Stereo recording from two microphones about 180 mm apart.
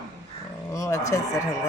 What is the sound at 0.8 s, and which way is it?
Speech, 15° left (ahead or behind).